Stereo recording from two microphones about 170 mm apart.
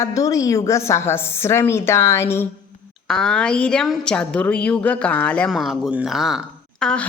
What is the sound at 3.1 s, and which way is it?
A woman's voice, 5° left (ahead or behind).